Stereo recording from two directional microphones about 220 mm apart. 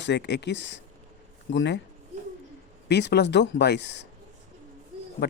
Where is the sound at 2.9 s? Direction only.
50° left (ahead or behind).